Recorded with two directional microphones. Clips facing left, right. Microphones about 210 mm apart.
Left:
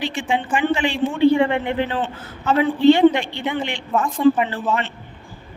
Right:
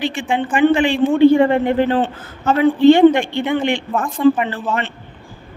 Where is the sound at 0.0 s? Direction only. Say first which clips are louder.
Right 3 dB; 55° right (ahead or behind).